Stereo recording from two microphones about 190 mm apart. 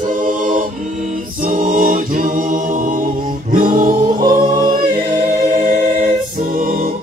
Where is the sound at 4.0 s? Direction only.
20° right (ahead or behind).